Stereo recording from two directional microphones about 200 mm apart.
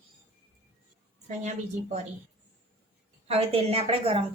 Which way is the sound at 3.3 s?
30° right (ahead or behind).